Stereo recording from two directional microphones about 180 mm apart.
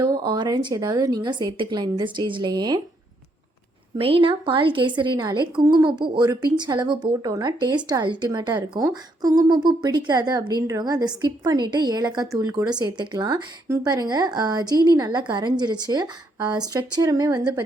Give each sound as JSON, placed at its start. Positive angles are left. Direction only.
{"t": 0.0, "sound": "a woman's voice", "side_deg": -25}
{"t": 3.9, "sound": "a woman's voice", "side_deg": -30}